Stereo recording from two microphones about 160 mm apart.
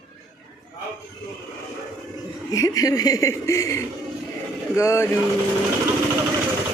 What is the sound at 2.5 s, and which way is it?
A woman's voice, 20° left (ahead or behind).